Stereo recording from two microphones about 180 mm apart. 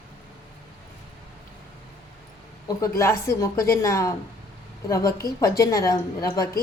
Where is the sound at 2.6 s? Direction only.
15° left (ahead or behind).